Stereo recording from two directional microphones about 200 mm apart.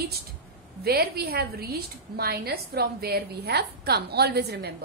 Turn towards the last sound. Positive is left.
turn(degrees=-55)  # may be behind; listen again after turning